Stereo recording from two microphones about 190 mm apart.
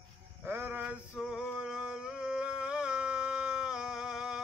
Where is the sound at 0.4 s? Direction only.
10° right (ahead or behind).